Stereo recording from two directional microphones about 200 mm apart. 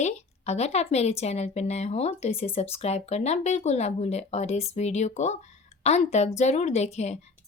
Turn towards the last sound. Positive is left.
turn(degrees=35)  # may be behind; listen again after turning